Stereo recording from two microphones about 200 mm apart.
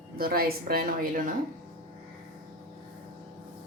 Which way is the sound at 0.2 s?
50° right (ahead or behind).